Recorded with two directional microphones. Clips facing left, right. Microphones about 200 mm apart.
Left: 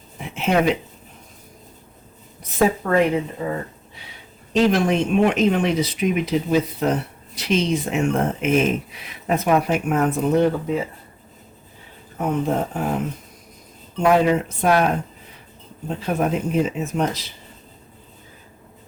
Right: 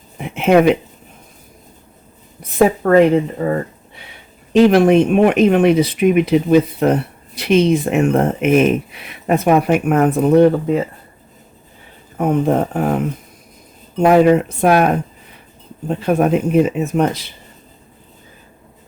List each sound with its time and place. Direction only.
0.2 s speech: 60° right (ahead or behind)
2.4 s speech: 55° right (ahead or behind)
12.1 s speech: 55° right (ahead or behind)
14.0 s speech: 55° right (ahead or behind)
15.9 s speech: 60° right (ahead or behind)